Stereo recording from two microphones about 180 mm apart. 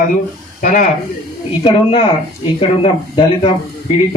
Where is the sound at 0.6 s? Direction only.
45° left (ahead or behind).